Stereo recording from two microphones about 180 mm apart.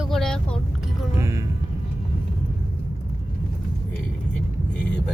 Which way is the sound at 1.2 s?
15° right (ahead or behind).